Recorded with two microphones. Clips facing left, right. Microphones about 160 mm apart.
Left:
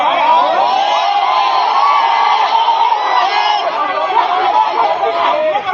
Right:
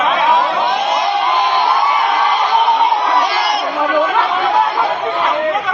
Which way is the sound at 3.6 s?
30° left (ahead or behind).